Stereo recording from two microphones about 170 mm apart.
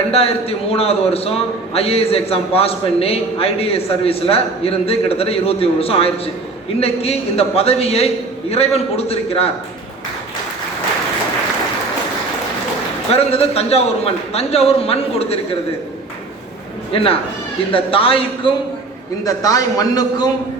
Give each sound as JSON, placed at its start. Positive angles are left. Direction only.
{"t": 0.1, "sound": "a man's voice", "side_deg": 35}
{"t": 13.1, "sound": "a man's voice", "side_deg": 35}
{"t": 16.9, "sound": "a man's voice", "side_deg": 35}
{"t": 19.2, "sound": "speech", "side_deg": 20}